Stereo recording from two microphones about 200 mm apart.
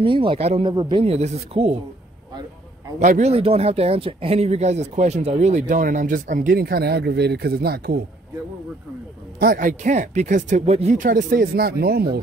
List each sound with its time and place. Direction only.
0.0 s speech: 25° right (ahead or behind)
3.0 s speech: 35° right (ahead or behind)
9.4 s speech: 45° right (ahead or behind)